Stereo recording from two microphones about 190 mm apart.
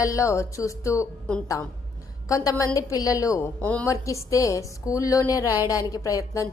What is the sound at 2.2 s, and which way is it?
A woman's voice, 15° left (ahead or behind).